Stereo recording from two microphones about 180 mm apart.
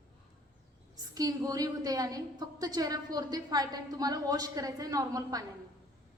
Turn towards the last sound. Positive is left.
turn(degrees=-20)  # may be behind; listen again after turning